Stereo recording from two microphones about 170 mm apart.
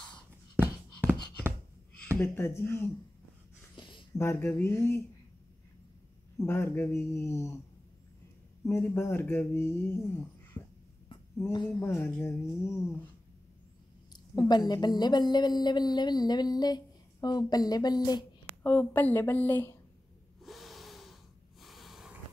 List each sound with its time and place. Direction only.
2.1 s speech: 15° left (ahead or behind)
3.7 s a sound: 30° left (ahead or behind)
4.2 s speech: 15° left (ahead or behind)
6.3 s speech: 15° left (ahead or behind)
8.6 s speech: 15° left (ahead or behind)
11.5 s a woman's voice: 25° left (ahead or behind)
11.8 s speech: 15° left (ahead or behind)
14.1 s a woman's voice: 25° left (ahead or behind)
18.6 s speech: 10° left (ahead or behind)
20.4 s snort: centre (ahead or behind)